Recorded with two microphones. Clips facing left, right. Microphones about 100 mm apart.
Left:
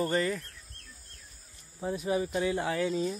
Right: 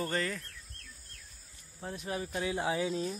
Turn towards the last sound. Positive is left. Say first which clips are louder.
# left 3 dB
turn(degrees=0)  # may be behind; listen again after turning